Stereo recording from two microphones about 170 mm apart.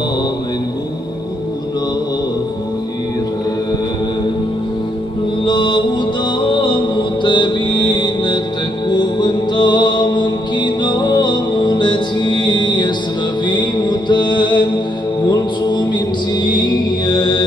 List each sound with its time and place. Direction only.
5.4 s mantra: 30° left (ahead or behind)
8.8 s music: 25° left (ahead or behind)
13.5 s mantra: 25° left (ahead or behind)